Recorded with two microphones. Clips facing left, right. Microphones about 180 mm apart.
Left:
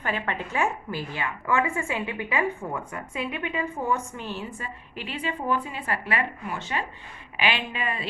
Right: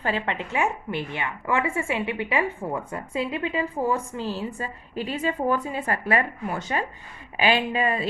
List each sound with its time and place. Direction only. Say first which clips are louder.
0.0 s a woman's voice: right 2 dB; 30° right (ahead or behind)